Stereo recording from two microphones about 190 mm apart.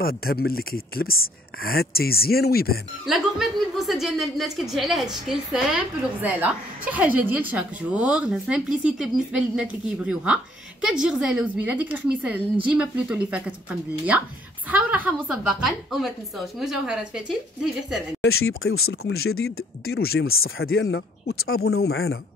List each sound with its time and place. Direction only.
0.0 s speech: 50° left (ahead or behind)
3.1 s a woman's voice: centre (ahead or behind)
14.7 s a woman's voice: 5° right (ahead or behind)
18.2 s speech: 90° left
18.9 s speech: 80° left
19.9 s speech: 55° left (ahead or behind)
20.2 s speech: 90° left